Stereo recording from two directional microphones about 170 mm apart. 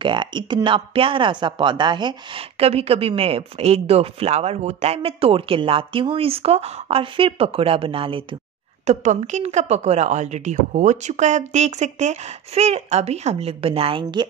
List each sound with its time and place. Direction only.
0.0 s speech: 30° right (ahead or behind)
8.8 s speech: 45° right (ahead or behind)